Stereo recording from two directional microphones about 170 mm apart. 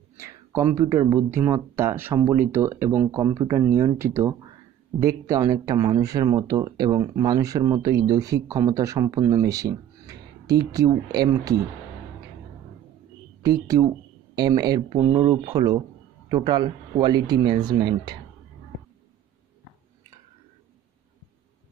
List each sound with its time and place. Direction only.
0.2 s a sound: 15° right (ahead or behind)
1.3 s speech: 15° right (ahead or behind)
13.4 s speech: 20° right (ahead or behind)